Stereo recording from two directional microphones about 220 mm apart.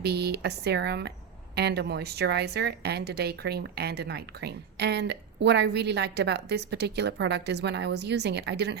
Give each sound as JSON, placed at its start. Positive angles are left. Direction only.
{"t": 0.0, "sound": "a woman's voice", "side_deg": -45}